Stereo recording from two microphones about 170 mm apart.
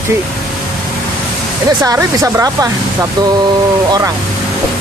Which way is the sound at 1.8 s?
15° right (ahead or behind).